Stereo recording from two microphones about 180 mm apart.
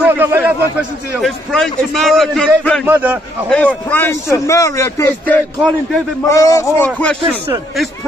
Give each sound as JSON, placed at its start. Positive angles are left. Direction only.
{"t": 0.0, "sound": "a sound", "side_deg": -10}
{"t": 1.2, "sound": "a man's voice", "side_deg": 0}
{"t": 2.9, "sound": "a man's voice", "side_deg": -10}
{"t": 3.4, "sound": "a man's voice", "side_deg": 5}